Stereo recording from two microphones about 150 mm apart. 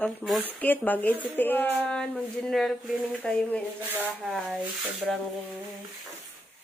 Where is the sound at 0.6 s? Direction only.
10° left (ahead or behind).